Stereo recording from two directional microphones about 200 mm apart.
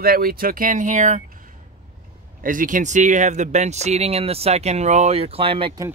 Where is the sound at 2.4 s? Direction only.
40° right (ahead or behind); by 5.9 s 25° right (ahead or behind).